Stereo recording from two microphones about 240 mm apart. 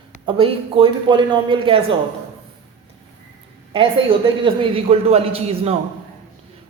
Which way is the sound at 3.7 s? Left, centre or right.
Right.